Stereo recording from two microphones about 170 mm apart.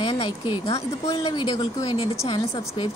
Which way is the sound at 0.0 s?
30° left (ahead or behind).